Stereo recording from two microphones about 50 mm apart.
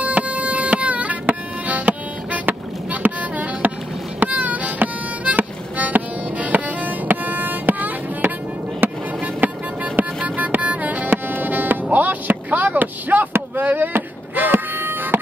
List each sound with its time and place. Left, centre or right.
0.0 s music: right